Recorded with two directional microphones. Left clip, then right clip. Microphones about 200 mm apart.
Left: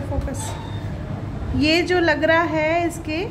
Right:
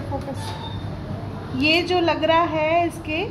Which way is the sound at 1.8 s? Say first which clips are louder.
Left 2 dB; 25° left (ahead or behind).